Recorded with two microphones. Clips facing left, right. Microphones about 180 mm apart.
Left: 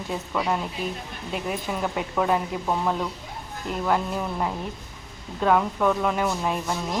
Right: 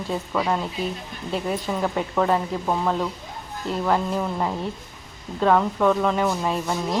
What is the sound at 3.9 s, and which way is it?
Speech, centre (ahead or behind).